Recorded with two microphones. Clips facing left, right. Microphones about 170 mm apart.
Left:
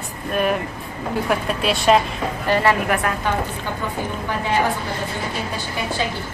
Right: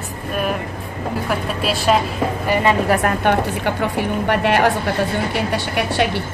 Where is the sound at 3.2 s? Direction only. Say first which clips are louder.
Right 6 dB; 70° right (ahead or behind).